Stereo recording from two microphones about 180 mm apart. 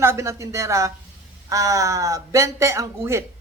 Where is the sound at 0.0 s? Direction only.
15° right (ahead or behind).